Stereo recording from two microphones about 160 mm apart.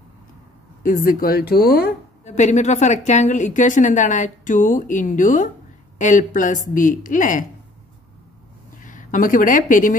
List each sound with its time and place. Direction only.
0.8 s speech: 60° left (ahead or behind)
2.2 s a woman's voice: 45° left (ahead or behind)
8.8 s a woman's voice: 55° left (ahead or behind)